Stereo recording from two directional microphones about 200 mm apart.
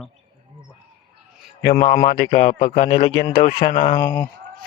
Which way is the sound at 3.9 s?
25° left (ahead or behind).